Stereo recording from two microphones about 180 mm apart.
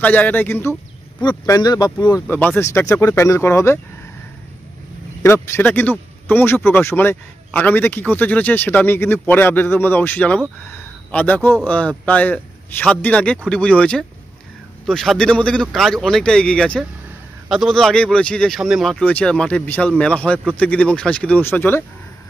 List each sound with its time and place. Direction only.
0.0 s a man's voice: 10° left (ahead or behind)
2.2 s a man's voice: 10° left (ahead or behind)
5.2 s a man's voice: 15° left (ahead or behind)